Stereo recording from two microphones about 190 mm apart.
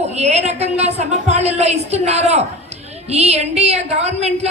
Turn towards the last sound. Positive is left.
turn(degrees=-35)  # may be behind; listen again after turning